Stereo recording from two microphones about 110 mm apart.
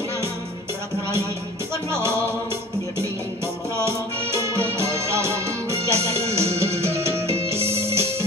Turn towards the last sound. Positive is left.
turn(degrees=-25)  # may be behind; listen again after turning